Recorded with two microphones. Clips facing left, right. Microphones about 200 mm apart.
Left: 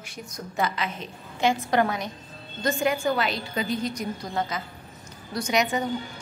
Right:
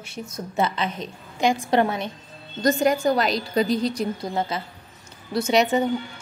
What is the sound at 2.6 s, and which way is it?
A woman's voice, 40° right (ahead or behind).